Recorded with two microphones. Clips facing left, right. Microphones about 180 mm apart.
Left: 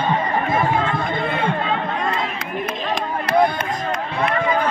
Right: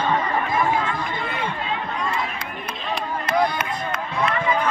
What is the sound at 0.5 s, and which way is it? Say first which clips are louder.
Chatter: left 2 dB; 30° left (ahead or behind).